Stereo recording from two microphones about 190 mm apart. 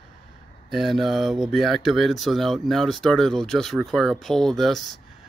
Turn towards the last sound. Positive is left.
turn(degrees=0)  # may be behind; listen again after turning